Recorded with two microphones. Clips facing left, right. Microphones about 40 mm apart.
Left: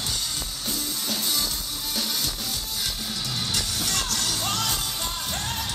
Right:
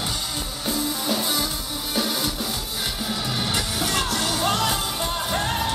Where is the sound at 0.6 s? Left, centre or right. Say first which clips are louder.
Right 7 dB; centre.